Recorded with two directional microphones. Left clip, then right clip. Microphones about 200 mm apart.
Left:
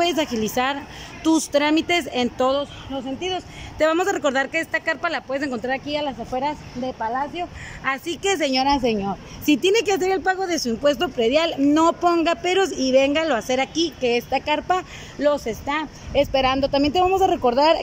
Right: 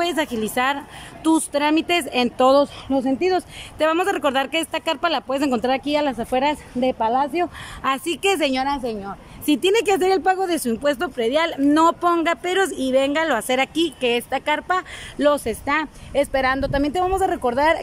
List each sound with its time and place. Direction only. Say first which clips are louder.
0.0 s speech: left 1 dB; centre (ahead or behind)
2.5 s speech: right 7 dB; 25° right (ahead or behind)
3.7 s speech: even; 5° right (ahead or behind)
8.6 s a woman's voice: left 4 dB; 10° left (ahead or behind)
9.5 s speech: right 1 dB; centre (ahead or behind)
15.1 s speech: right 2 dB; 10° right (ahead or behind)